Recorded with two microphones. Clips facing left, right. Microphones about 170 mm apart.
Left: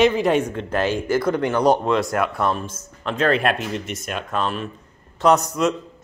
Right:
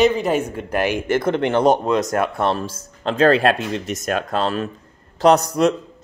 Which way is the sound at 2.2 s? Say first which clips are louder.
Right 2 dB; 30° right (ahead or behind).